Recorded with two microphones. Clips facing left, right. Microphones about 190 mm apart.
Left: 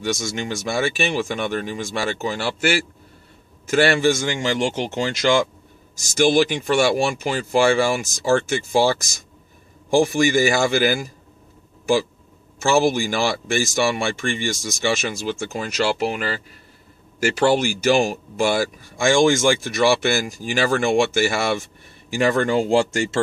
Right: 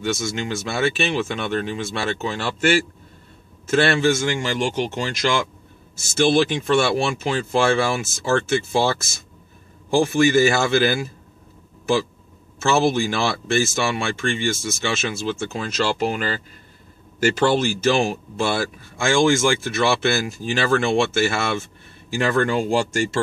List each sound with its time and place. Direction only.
0.7 s speech: 15° left (ahead or behind)
12.6 s speech: 10° left (ahead or behind)